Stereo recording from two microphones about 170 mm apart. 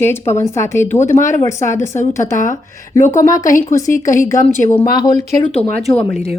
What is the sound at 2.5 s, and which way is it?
Speech, 15° left (ahead or behind).